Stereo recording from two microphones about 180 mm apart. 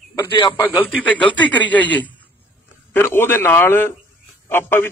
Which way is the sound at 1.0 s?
10° left (ahead or behind).